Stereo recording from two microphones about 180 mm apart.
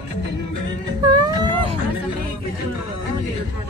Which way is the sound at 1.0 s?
25° right (ahead or behind).